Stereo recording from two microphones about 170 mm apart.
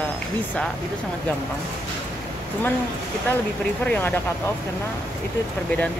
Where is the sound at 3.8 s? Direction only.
10° left (ahead or behind).